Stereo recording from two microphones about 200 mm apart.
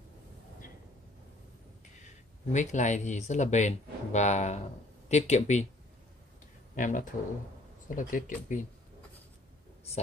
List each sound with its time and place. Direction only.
2.5 s speech: 35° left (ahead or behind)
6.7 s a sound: 40° left (ahead or behind)
7.9 s speech: 40° left (ahead or behind)